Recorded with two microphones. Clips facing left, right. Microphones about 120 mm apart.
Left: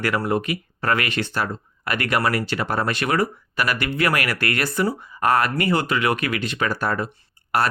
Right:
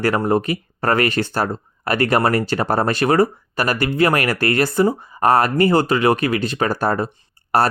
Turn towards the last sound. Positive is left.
turn(degrees=-35)  # may be behind; listen again after turning